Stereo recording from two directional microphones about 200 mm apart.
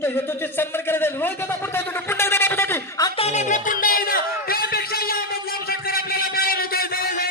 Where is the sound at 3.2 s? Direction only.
35° left (ahead or behind).